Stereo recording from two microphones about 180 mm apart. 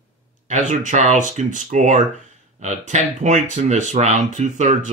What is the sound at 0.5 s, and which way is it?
Speech, 40° right (ahead or behind).